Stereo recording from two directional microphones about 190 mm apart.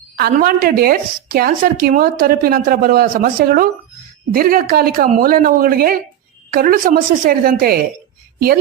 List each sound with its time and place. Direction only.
0.2 s speech: 50° right (ahead or behind)